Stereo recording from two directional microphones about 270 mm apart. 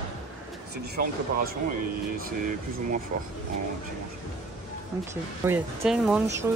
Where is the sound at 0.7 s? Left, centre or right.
Right.